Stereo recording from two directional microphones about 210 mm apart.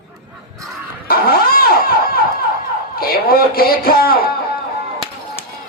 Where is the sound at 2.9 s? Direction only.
45° left (ahead or behind).